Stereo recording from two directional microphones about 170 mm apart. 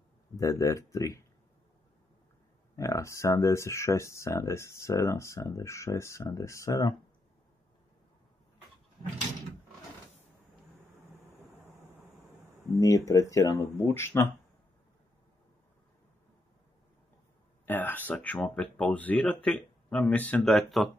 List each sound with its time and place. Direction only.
0.4 s speech: 20° left (ahead or behind)
2.7 s speech: 20° left (ahead or behind)
12.7 s speech: 20° left (ahead or behind)
17.6 s speech: 10° left (ahead or behind)